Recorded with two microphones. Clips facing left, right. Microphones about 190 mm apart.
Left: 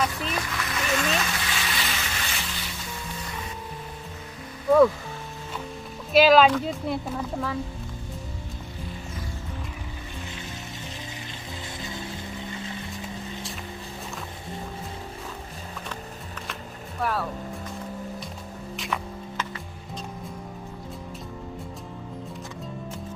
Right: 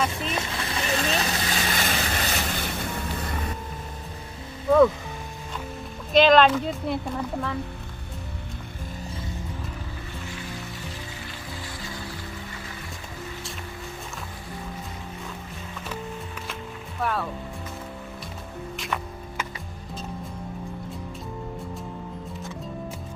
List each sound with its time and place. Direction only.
0.1 s vehicle: 25° right (ahead or behind); by 3.3 s 55° right (ahead or behind)
6.1 s a woman's voice: 5° left (ahead or behind)
11.8 s music: 20° left (ahead or behind)
17.0 s a woman's voice: centre (ahead or behind)
18.8 s music: centre (ahead or behind)